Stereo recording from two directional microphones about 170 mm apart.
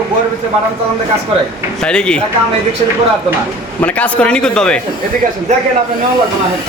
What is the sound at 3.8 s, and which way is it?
Speech, 5° left (ahead or behind).